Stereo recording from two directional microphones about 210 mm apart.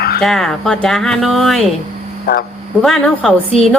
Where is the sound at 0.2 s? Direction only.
Centre (ahead or behind).